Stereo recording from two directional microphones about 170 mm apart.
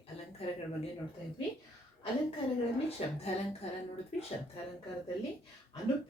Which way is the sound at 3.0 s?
35° left (ahead or behind).